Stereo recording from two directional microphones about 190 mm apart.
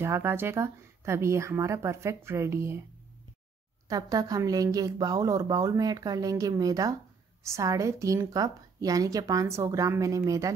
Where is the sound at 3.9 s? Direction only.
20° right (ahead or behind).